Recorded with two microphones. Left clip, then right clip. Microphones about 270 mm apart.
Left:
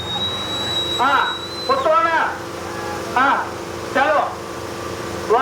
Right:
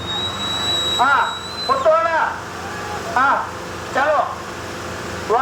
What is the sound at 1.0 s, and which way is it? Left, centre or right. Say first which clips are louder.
Speech: right 1 dB; centre.